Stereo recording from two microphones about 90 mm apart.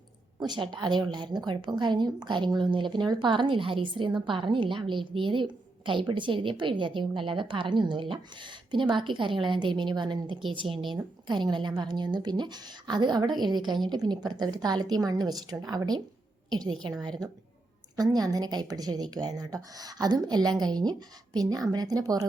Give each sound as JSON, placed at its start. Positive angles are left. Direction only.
{"t": 0.3, "sound": "a woman's voice", "side_deg": -55}
{"t": 10.5, "sound": "speech", "side_deg": -70}
{"t": 11.3, "sound": "a woman's voice", "side_deg": -55}
{"t": 17.9, "sound": "a woman's voice", "side_deg": -45}